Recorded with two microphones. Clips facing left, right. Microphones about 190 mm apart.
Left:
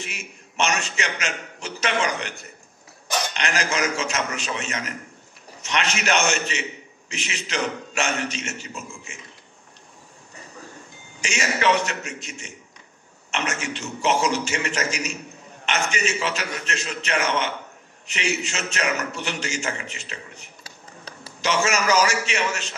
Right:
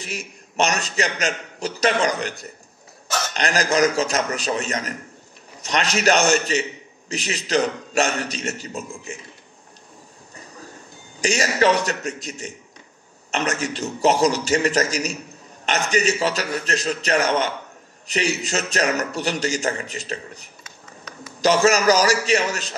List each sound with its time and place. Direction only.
0.0 s a man's voice: 35° right (ahead or behind)
3.1 s a sound: 15° left (ahead or behind)
3.3 s a man's voice: 35° right (ahead or behind)
11.1 s a man's voice: 35° right (ahead or behind)
20.6 s a sound: 30° left (ahead or behind)
21.4 s a man's voice: 35° right (ahead or behind)